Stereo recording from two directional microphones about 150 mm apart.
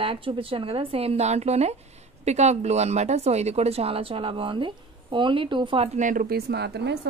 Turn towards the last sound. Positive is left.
turn(degrees=-90)